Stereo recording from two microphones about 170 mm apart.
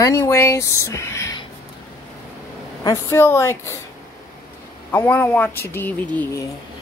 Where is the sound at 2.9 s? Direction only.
15° left (ahead or behind).